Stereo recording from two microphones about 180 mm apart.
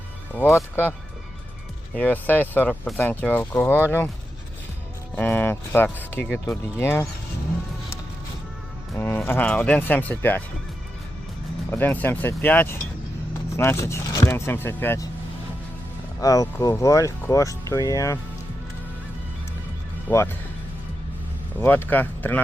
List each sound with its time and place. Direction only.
0.3 s speech: 10° left (ahead or behind)
2.0 s speech: 10° left (ahead or behind)
5.1 s speech: 10° left (ahead or behind)
9.0 s speech: 10° left (ahead or behind)
11.7 s speech: 10° left (ahead or behind)
16.2 s speech: 20° left (ahead or behind)
20.1 s speech: 15° left (ahead or behind)
21.6 s speech: 10° left (ahead or behind)